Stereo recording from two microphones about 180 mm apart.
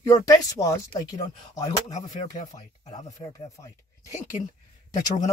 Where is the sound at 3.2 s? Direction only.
20° left (ahead or behind).